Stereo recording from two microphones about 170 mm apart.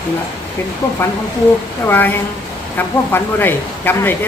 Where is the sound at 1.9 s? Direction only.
10° left (ahead or behind).